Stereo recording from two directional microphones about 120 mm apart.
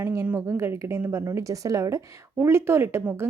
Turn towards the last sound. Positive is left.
turn(degrees=-20)  # may be behind; listen again after turning